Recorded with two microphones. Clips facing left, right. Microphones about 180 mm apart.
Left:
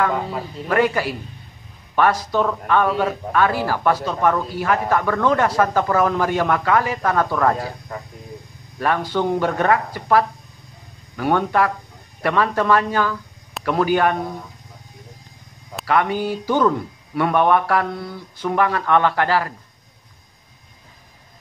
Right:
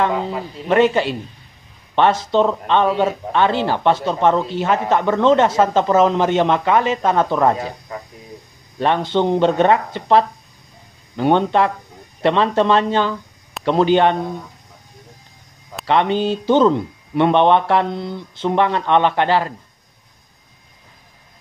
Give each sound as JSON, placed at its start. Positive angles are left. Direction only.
{"t": 0.7, "sound": "speech", "side_deg": -25}
{"t": 8.7, "sound": "speech", "side_deg": -25}
{"t": 15.8, "sound": "speech", "side_deg": -25}